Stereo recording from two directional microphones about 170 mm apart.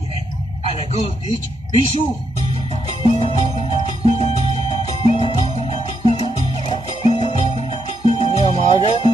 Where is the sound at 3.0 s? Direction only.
30° left (ahead or behind).